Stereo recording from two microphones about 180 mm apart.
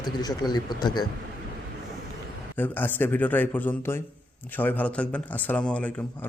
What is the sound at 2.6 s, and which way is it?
A man's voice, 10° left (ahead or behind).